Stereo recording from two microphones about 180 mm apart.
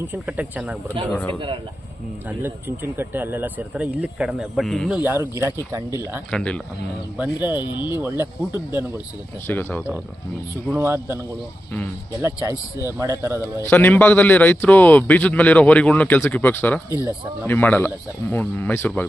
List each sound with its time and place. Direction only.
0.1 s speech: 10° right (ahead or behind)
1.3 s a man's voice: 30° right (ahead or behind)
2.4 s speech: 10° right (ahead or behind)
5.0 s speech: 15° right (ahead or behind)
6.3 s a man's voice: 5° left (ahead or behind)
7.2 s speech: 10° right (ahead or behind)
7.6 s speech: 25° left (ahead or behind)
8.0 s speech: 10° right (ahead or behind)
9.5 s a man's voice: 10° left (ahead or behind)
10.8 s speech: 15° right (ahead or behind)
13.6 s a man's voice: 10° left (ahead or behind)